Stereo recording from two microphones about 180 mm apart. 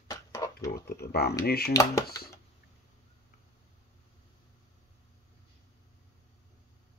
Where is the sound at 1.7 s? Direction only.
20° left (ahead or behind).